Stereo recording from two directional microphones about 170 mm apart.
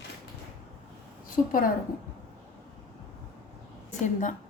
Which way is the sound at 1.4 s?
45° left (ahead or behind).